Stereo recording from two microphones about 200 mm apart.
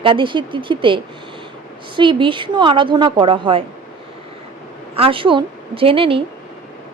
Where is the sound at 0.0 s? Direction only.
25° right (ahead or behind).